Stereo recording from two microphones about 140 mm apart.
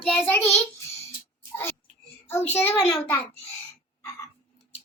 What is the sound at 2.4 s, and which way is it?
Speech, 15° left (ahead or behind).